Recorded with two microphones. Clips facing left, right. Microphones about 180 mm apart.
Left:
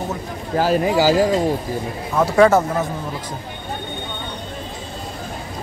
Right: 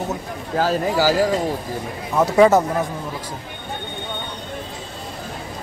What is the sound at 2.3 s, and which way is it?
Speech, 15° right (ahead or behind).